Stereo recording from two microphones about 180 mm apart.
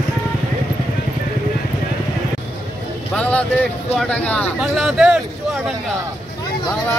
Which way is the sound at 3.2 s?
5° left (ahead or behind).